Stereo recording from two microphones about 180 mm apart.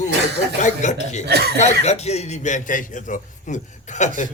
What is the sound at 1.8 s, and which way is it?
A man's voice, 35° left (ahead or behind).